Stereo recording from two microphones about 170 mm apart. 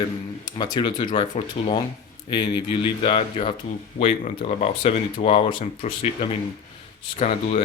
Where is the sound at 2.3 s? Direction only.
30° left (ahead or behind).